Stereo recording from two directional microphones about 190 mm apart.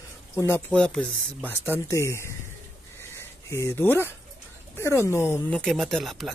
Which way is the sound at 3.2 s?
15° left (ahead or behind).